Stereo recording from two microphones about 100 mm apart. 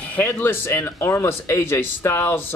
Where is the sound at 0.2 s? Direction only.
20° left (ahead or behind).